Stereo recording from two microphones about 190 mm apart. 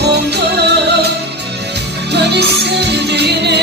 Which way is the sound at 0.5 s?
60° right (ahead or behind).